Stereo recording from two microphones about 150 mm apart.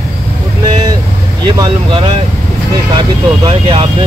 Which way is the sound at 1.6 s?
35° right (ahead or behind).